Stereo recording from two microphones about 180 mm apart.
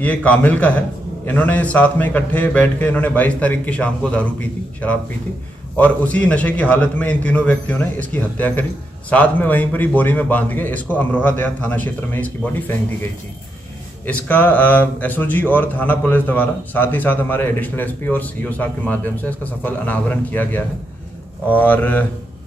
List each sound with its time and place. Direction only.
0.0 s speech: 10° left (ahead or behind)
14.0 s speech: 10° left (ahead or behind)